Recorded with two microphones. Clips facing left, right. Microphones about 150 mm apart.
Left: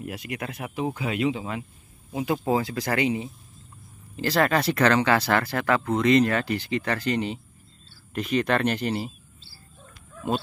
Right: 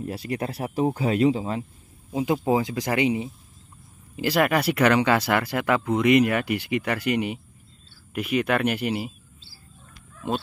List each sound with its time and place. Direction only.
0.0 s speech: 35° right (ahead or behind)
2.3 s speech: 15° right (ahead or behind)